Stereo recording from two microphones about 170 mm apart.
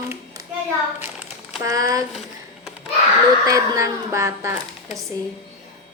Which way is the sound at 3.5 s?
20° right (ahead or behind).